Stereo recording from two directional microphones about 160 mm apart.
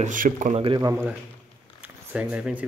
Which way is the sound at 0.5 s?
35° right (ahead or behind).